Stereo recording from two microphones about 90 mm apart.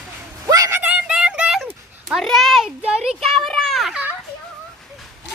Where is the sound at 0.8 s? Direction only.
10° right (ahead or behind).